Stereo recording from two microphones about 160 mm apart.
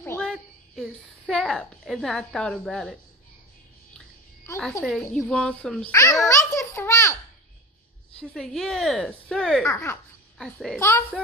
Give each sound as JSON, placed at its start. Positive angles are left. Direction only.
{"t": 0.0, "sound": "a sound", "side_deg": 15}
{"t": 0.3, "sound": "a woman's voice", "side_deg": 0}
{"t": 5.1, "sound": "a woman's voice", "side_deg": 5}
{"t": 5.9, "sound": "a child's voice", "side_deg": 20}
{"t": 8.2, "sound": "a woman's voice", "side_deg": 5}
{"t": 9.7, "sound": "a child's voice", "side_deg": 15}
{"t": 10.3, "sound": "a child's voice", "side_deg": 0}
{"t": 10.8, "sound": "a child's voice", "side_deg": 15}